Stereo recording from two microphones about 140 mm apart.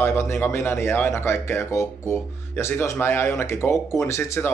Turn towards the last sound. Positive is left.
turn(degrees=20)  # may be behind; listen again after turning